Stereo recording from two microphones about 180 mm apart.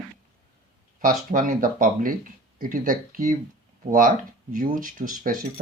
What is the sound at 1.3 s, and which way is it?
Speech, 50° right (ahead or behind).